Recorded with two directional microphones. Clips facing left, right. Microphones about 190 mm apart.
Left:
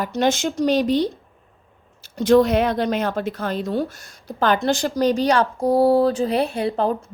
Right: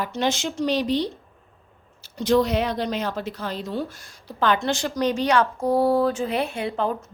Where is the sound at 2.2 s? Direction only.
50° left (ahead or behind).